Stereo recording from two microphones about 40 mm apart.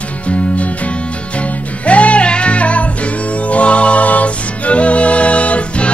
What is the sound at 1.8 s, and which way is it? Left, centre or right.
Music, left.